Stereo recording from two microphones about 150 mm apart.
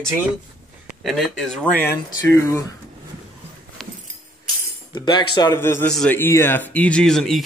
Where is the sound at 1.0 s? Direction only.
Centre (ahead or behind); by 2.7 s 20° left (ahead or behind).